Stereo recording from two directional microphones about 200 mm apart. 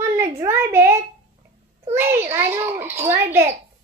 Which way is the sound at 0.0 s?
15° right (ahead or behind).